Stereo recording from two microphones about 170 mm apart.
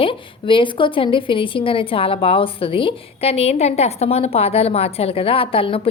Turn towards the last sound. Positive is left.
turn(degrees=35)  # may be behind; listen again after turning